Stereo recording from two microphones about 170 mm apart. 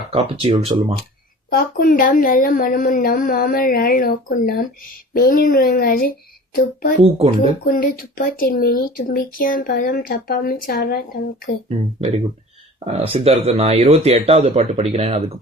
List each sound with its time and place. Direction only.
0.1 s speech: 35° right (ahead or behind)
1.5 s speech: 55° left (ahead or behind)
7.0 s speech: 35° right (ahead or behind)
7.6 s speech: 60° left (ahead or behind)
11.7 s speech: 35° right (ahead or behind)